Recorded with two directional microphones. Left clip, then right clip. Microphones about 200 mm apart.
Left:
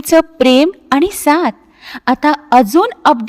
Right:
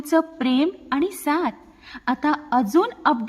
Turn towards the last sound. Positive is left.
turn(degrees=45)  # may be behind; listen again after turning